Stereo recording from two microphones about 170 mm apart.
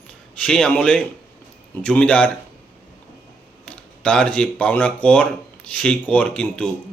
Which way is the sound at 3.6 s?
5° left (ahead or behind).